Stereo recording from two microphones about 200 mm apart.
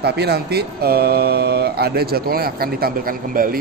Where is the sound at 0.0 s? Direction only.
55° right (ahead or behind).